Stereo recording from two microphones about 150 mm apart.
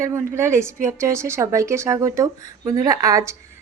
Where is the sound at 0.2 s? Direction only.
20° right (ahead or behind).